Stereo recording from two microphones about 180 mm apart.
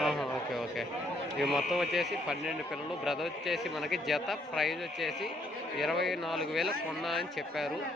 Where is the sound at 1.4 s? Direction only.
Centre (ahead or behind).